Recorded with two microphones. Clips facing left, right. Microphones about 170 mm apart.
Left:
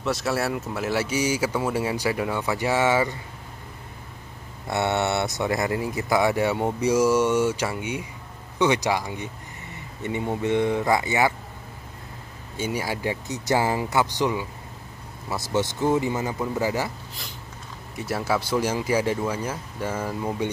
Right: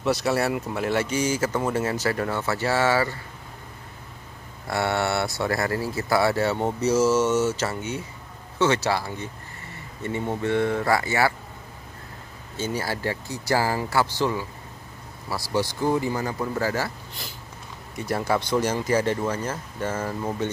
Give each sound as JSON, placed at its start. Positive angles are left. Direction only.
{"t": 0.0, "sound": "speech", "side_deg": 0}
{"t": 4.6, "sound": "speech", "side_deg": 20}
{"t": 12.5, "sound": "speech", "side_deg": 10}
{"t": 17.2, "sound": "a sound", "side_deg": 0}
{"t": 17.9, "sound": "speech", "side_deg": 5}